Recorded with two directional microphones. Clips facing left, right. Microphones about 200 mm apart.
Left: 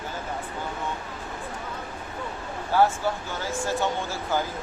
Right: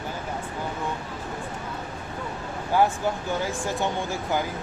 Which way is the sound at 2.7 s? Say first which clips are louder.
Even; 15° right (ahead or behind).